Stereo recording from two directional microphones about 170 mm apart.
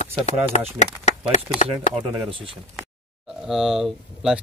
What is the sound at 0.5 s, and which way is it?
Speech, 40° left (ahead or behind).